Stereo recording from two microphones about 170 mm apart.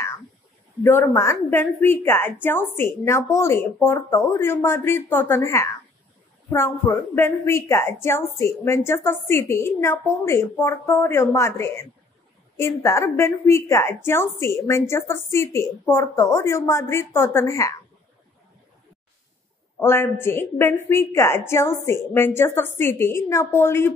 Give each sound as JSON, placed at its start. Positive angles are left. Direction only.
{"t": 0.8, "sound": "a woman's voice", "side_deg": 15}
{"t": 19.8, "sound": "a woman's voice", "side_deg": 15}